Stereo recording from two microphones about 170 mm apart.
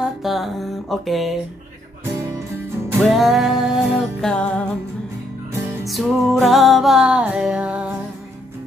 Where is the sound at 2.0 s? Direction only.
15° right (ahead or behind).